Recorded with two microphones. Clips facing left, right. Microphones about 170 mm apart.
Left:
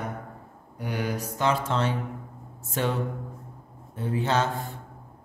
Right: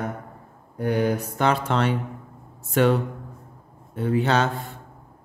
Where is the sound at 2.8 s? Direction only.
70° right (ahead or behind).